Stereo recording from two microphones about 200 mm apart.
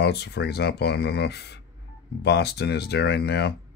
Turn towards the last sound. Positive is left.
turn(degrees=55)  # may be behind; listen again after turning